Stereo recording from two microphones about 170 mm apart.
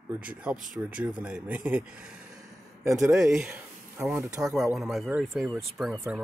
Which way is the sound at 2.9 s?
Centre (ahead or behind).